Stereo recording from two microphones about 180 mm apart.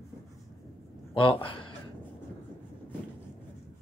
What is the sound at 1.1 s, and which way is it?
Speech, 30° left (ahead or behind).